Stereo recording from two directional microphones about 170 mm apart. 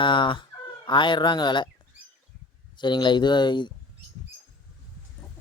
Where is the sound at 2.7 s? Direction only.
25° left (ahead or behind).